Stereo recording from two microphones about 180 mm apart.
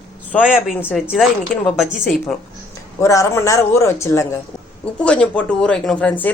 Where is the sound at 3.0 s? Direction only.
15° left (ahead or behind).